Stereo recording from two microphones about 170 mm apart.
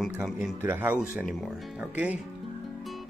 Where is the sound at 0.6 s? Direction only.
10° right (ahead or behind).